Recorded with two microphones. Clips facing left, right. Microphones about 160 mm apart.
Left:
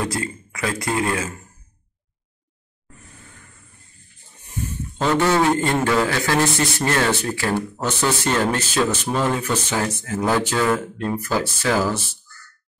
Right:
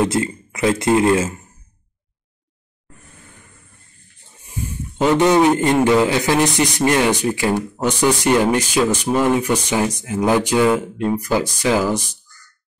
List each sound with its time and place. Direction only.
0.0 s speech: 25° right (ahead or behind)
4.4 s a man's voice: 10° right (ahead or behind)